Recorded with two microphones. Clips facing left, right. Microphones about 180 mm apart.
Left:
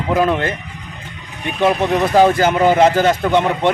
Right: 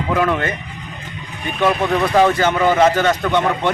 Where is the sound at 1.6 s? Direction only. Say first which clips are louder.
Left 2 dB; 25° left (ahead or behind).